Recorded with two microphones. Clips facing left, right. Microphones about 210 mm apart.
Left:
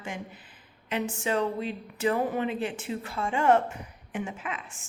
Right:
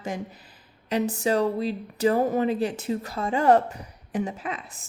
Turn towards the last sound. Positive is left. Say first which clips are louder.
# right 3 dB
turn(degrees=-35)  # may be behind; listen again after turning